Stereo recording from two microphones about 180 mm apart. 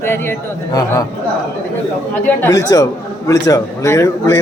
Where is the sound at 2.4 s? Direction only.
20° left (ahead or behind).